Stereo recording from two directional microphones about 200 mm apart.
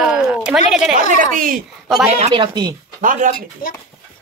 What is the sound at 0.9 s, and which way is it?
Speech, 40° right (ahead or behind).